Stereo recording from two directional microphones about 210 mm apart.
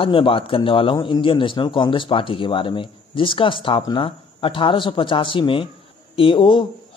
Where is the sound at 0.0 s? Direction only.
25° left (ahead or behind).